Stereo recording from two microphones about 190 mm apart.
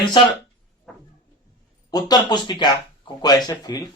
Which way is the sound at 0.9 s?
Centre (ahead or behind).